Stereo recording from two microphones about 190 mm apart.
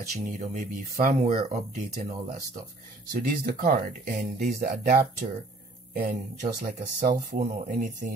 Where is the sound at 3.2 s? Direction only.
45° right (ahead or behind).